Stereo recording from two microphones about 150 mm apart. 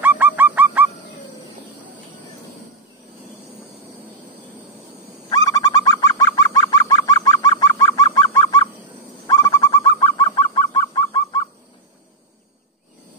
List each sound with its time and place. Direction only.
0.0 s goose: 10° right (ahead or behind)
5.3 s bird: 25° left (ahead or behind)
7.4 s goose: 25° left (ahead or behind)
9.3 s bird: 25° left (ahead or behind)